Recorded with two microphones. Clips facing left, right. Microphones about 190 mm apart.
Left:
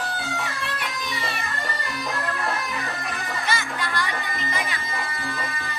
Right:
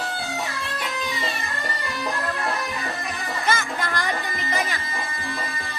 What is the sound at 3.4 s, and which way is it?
Music, 45° right (ahead or behind).